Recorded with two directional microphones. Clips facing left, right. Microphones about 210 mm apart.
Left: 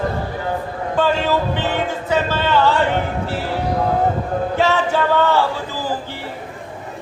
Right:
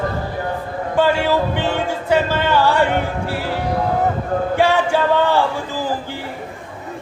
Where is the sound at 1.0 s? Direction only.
10° right (ahead or behind).